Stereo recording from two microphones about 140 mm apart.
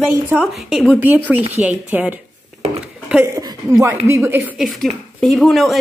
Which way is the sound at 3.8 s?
20° right (ahead or behind).